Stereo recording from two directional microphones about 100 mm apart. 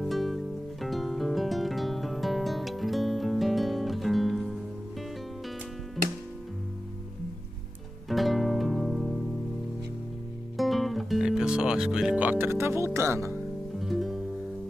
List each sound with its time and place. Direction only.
0.0 s music: centre (ahead or behind)
8.1 s music: centre (ahead or behind)
10.6 s music: centre (ahead or behind); by 13.4 s 25° right (ahead or behind)
13.7 s music: centre (ahead or behind)